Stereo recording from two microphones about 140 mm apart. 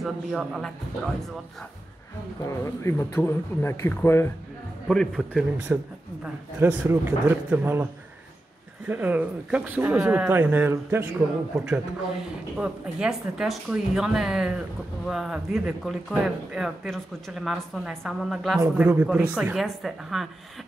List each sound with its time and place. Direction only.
0.0 s speech: centre (ahead or behind)
2.4 s speech: 20° left (ahead or behind)
4.8 s speech: centre (ahead or behind)
5.7 s speech: 10° right (ahead or behind)
12.5 s speech: 5° right (ahead or behind)